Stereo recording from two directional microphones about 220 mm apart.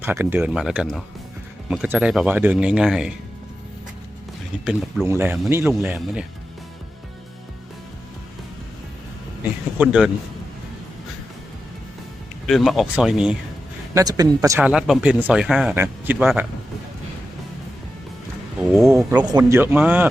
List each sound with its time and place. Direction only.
0.0 s speech: 10° right (ahead or behind)
4.6 s speech: centre (ahead or behind)
9.7 s speech: 5° right (ahead or behind)
12.5 s speech: centre (ahead or behind)
13.9 s speech: 15° right (ahead or behind)
14.7 s speech: 5° right (ahead or behind)
18.7 s speech: centre (ahead or behind)
18.9 s speech: 15° right (ahead or behind)